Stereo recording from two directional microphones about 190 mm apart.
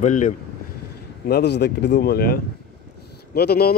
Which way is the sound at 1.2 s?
60° left (ahead or behind).